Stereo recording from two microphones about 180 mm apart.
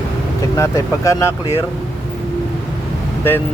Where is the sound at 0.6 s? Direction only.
20° left (ahead or behind).